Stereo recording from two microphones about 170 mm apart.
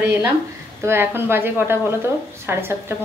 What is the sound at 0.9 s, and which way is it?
A woman's voice, 15° right (ahead or behind).